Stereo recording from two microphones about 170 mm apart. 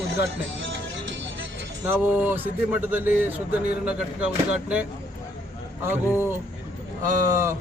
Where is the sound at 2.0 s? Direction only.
10° right (ahead or behind).